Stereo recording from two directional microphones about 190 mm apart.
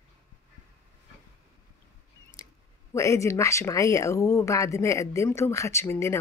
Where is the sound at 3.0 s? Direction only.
15° left (ahead or behind).